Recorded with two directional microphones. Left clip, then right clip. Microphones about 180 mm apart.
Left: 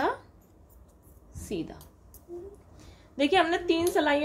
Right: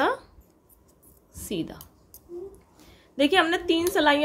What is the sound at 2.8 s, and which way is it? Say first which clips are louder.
A woman's voice: right 3 dB; 15° right (ahead or behind).